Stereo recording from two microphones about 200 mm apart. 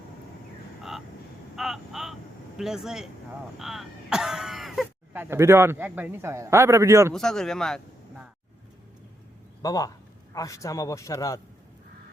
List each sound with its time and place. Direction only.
0.8 s vehicle: centre (ahead or behind)
1.5 s a sound: centre (ahead or behind)
2.6 s speech: centre (ahead or behind)
7.1 s speech: centre (ahead or behind)
9.6 s a man's voice: 20° left (ahead or behind)